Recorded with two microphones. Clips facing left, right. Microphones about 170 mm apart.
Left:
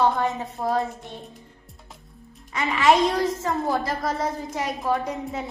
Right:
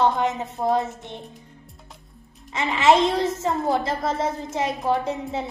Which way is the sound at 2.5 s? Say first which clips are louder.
Right 1 dB; 25° right (ahead or behind).